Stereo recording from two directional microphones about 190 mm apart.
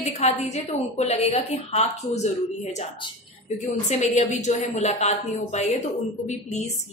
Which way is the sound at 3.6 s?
40° left (ahead or behind).